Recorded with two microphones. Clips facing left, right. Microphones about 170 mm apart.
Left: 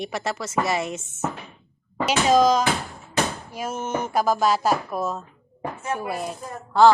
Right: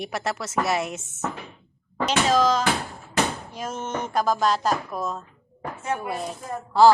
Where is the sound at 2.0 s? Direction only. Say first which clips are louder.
Left 3 dB; 15° left (ahead or behind).